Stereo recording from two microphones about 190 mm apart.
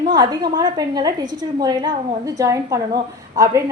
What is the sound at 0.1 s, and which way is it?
A woman's voice, 20° right (ahead or behind).